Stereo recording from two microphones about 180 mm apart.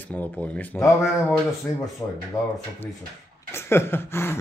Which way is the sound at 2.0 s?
10° left (ahead or behind).